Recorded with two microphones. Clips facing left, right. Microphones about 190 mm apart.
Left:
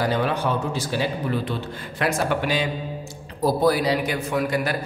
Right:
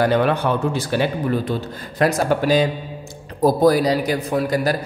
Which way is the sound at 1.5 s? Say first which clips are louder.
Right 4 dB; 40° right (ahead or behind).